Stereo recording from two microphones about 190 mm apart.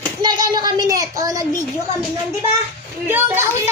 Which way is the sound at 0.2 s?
20° right (ahead or behind).